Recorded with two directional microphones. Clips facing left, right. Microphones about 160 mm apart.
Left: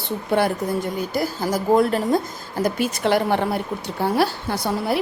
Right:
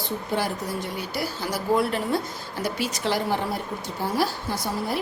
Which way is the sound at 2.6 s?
55° left (ahead or behind).